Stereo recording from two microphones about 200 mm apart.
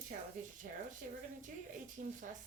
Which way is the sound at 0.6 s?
45° right (ahead or behind).